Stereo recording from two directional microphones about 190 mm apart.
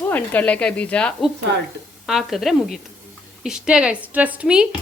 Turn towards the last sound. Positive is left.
turn(degrees=-5)  # may be behind; listen again after turning